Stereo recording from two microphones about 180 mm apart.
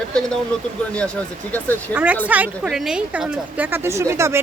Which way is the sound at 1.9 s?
10° right (ahead or behind).